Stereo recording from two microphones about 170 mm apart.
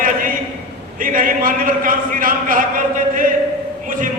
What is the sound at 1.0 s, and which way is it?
A man's voice, 55° right (ahead or behind).